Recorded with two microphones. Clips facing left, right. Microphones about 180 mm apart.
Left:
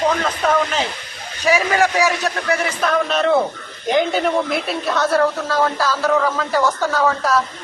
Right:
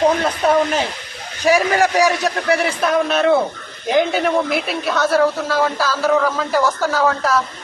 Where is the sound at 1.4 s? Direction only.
40° right (ahead or behind).